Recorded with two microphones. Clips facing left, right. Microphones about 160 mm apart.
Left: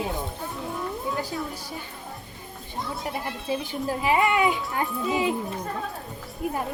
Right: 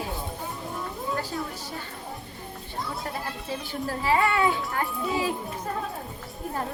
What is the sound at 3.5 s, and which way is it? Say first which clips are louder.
A child's voice: left 5 dB; 15° left (ahead or behind).